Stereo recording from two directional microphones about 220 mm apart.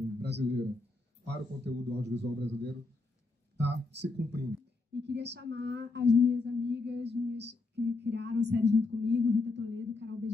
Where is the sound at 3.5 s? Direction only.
50° right (ahead or behind).